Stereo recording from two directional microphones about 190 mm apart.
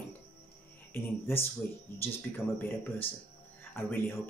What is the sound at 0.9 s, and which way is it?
Speech, 10° left (ahead or behind).